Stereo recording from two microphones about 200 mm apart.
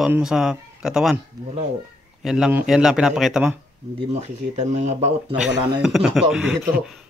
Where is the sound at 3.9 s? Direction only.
35° right (ahead or behind).